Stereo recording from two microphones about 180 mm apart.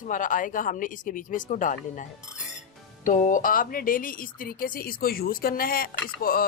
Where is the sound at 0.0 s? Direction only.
45° left (ahead or behind).